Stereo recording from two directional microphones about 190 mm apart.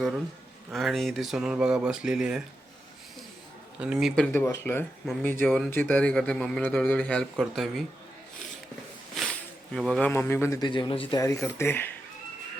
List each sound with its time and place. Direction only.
0.7 s a man's voice: centre (ahead or behind)
3.8 s a man's voice: 5° right (ahead or behind)
4.1 s a man's voice: 5° left (ahead or behind)
9.7 s a man's voice: centre (ahead or behind)
10.1 s a man's voice: 10° left (ahead or behind); by 11.2 s 25° left (ahead or behind)
11.2 s speech: 15° left (ahead or behind)